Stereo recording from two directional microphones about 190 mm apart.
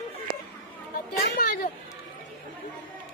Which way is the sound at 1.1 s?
50° left (ahead or behind).